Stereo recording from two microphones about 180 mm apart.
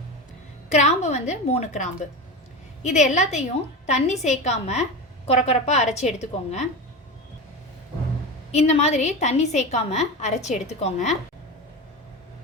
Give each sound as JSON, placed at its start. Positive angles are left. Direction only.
{"t": 0.7, "sound": "a woman's voice", "side_deg": 40}
{"t": 8.5, "sound": "a woman's voice", "side_deg": 35}